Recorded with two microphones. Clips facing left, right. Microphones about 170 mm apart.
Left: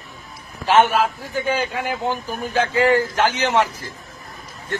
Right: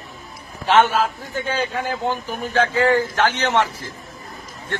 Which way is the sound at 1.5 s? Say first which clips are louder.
Left 1 dB; 10° left (ahead or behind).